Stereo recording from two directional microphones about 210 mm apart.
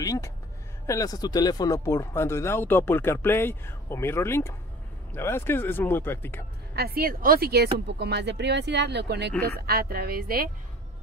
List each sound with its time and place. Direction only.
0.0 s speech: 15° left (ahead or behind)
6.7 s speech: 45° right (ahead or behind)